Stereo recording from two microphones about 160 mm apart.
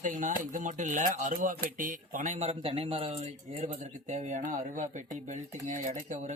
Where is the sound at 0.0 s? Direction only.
55° right (ahead or behind).